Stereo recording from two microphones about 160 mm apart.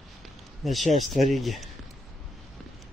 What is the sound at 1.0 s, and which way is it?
Speech, 50° right (ahead or behind).